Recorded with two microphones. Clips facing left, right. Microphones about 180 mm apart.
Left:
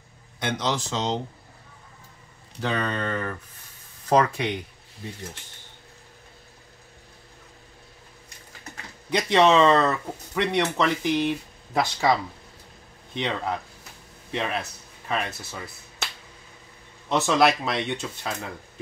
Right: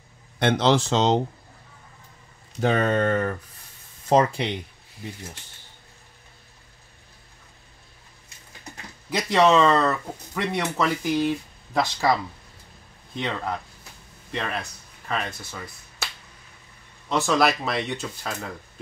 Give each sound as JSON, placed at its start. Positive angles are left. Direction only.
{"t": 0.4, "sound": "speech", "side_deg": -70}
{"t": 0.8, "sound": "speech", "side_deg": -80}
{"t": 2.6, "sound": "speech", "side_deg": -50}
{"t": 4.1, "sound": "speech", "side_deg": -30}
{"t": 9.1, "sound": "speech", "side_deg": 0}
{"t": 17.1, "sound": "speech", "side_deg": 0}